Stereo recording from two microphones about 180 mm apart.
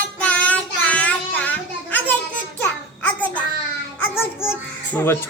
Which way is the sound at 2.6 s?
10° left (ahead or behind).